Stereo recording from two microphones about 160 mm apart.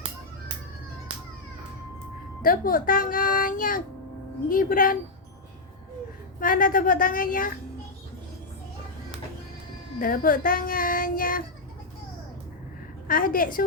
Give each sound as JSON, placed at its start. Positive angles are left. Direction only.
{"t": 2.4, "sound": "speech", "side_deg": 60}
{"t": 6.4, "sound": "speech", "side_deg": 60}
{"t": 10.0, "sound": "speech", "side_deg": 60}
{"t": 13.1, "sound": "speech", "side_deg": 60}